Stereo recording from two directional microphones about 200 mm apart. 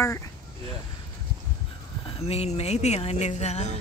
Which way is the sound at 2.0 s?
30° left (ahead or behind).